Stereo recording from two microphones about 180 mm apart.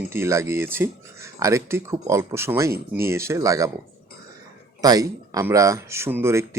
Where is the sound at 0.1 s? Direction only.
15° right (ahead or behind).